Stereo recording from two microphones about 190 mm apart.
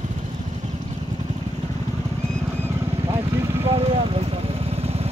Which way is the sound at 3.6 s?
30° right (ahead or behind).